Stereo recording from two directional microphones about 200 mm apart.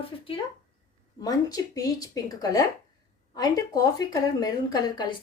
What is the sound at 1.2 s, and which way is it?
Speech, 20° left (ahead or behind).